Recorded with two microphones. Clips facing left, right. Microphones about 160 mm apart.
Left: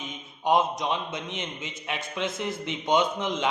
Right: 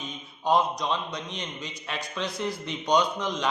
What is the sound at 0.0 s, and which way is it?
Speech, 20° left (ahead or behind).